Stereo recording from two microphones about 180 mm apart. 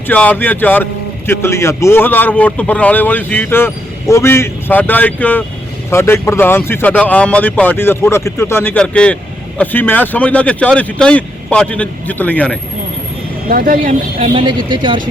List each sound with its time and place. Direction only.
0.1 s a man's voice: 10° left (ahead or behind)
13.5 s speech: 50° right (ahead or behind)
14.2 s speech: 25° right (ahead or behind)